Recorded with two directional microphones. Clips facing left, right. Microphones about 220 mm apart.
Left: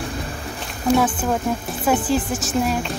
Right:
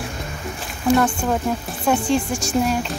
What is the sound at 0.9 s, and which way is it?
A woman's voice, 5° left (ahead or behind).